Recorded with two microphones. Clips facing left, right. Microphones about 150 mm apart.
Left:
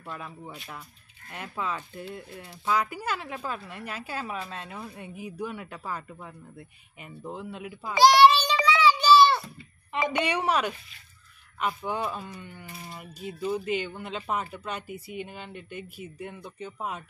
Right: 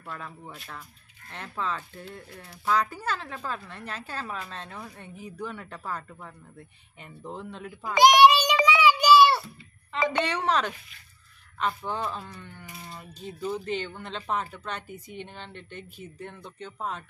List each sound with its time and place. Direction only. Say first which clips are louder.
1.3 s speech: even; 10° left (ahead or behind)
7.9 s a sound: even; 15° right (ahead or behind)
8.6 s child singing: even; 10° right (ahead or behind)
10.0 s speech: right 1 dB; 10° left (ahead or behind)